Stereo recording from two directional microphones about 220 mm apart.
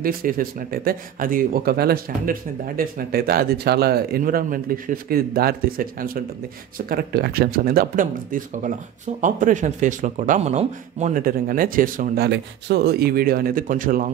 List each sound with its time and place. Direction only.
0.0 s speech: 40° right (ahead or behind)